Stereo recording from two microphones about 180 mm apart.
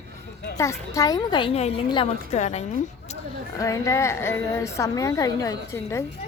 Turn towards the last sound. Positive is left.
turn(degrees=20)  # may be behind; listen again after turning